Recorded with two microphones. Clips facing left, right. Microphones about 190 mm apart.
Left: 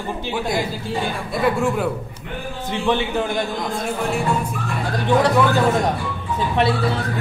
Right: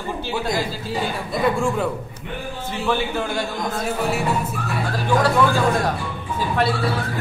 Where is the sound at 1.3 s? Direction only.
5° left (ahead or behind).